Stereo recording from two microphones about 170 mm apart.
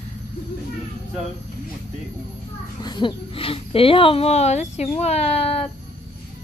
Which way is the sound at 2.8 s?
25° left (ahead or behind).